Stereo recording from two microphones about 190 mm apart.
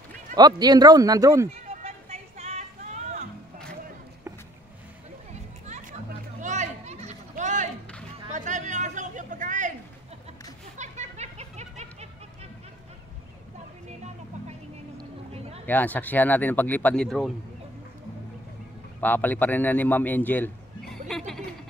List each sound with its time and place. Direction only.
0.4 s speech: 20° right (ahead or behind)
1.5 s music: 35° right (ahead or behind)
6.4 s a sound: 40° right (ahead or behind)
10.8 s a sound: 35° right (ahead or behind)
15.6 s speech: 10° left (ahead or behind)
18.9 s a man's voice: 10° left (ahead or behind)